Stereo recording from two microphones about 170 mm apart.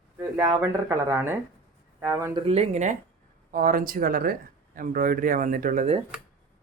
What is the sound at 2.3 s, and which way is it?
Speech, 35° right (ahead or behind).